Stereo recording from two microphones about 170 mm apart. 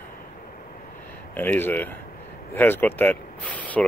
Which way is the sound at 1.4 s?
10° left (ahead or behind).